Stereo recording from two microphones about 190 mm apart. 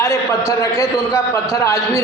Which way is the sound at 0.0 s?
15° left (ahead or behind).